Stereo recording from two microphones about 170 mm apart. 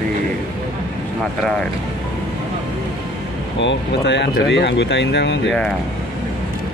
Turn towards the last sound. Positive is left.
turn(degrees=90)